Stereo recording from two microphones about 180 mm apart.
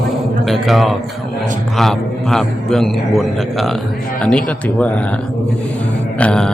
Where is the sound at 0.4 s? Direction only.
Centre (ahead or behind).